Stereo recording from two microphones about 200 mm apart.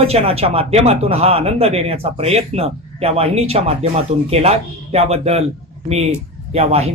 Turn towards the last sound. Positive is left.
turn(degrees=-30)  # may be behind; listen again after turning